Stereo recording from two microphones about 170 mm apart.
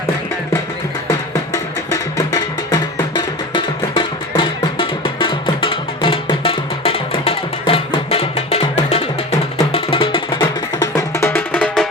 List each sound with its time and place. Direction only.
1.5 s music: 20° left (ahead or behind)